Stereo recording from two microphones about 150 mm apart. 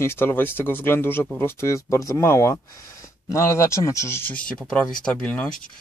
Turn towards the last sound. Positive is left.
turn(degrees=5)  # may be behind; listen again after turning